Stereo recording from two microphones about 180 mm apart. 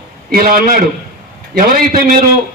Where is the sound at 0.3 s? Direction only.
55° right (ahead or behind).